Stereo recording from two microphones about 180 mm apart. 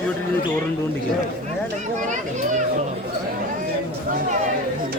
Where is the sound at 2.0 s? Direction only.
45° right (ahead or behind).